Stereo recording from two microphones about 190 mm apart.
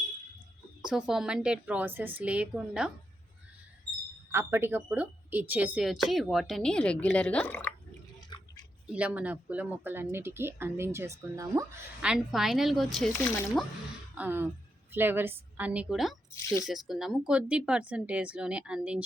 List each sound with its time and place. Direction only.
0.8 s a woman's voice: 5° right (ahead or behind)
4.3 s a woman's voice: 15° right (ahead or behind); by 7.7 s 10° left (ahead or behind)
8.3 s a sound: 25° left (ahead or behind)
8.9 s speech: 5° right (ahead or behind)
12.0 s a woman's voice: 5° right (ahead or behind)
14.2 s a woman's voice: 10° right (ahead or behind)